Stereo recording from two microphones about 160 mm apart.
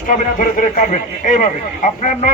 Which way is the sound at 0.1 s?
55° left (ahead or behind).